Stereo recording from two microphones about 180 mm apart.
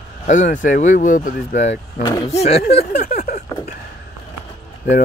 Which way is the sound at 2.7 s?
40° left (ahead or behind).